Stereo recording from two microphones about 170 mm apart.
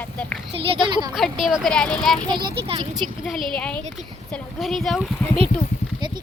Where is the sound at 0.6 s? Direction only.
30° right (ahead or behind).